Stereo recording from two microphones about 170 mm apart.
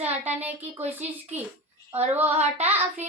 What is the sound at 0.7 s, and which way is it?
Child singing, 10° right (ahead or behind).